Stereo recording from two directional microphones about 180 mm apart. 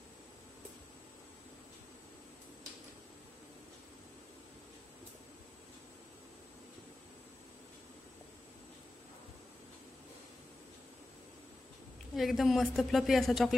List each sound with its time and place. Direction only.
12.2 s a woman's voice: centre (ahead or behind)